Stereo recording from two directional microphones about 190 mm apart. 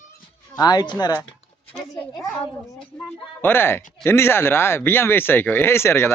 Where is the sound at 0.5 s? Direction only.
20° left (ahead or behind).